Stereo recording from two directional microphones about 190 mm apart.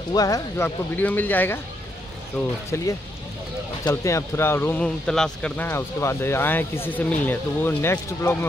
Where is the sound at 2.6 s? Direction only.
15° left (ahead or behind).